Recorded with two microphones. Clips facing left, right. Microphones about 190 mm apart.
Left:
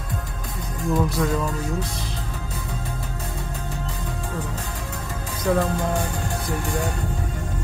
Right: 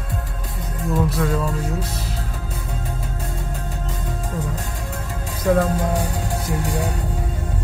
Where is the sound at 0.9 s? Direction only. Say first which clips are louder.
Right 1 dB; centre (ahead or behind).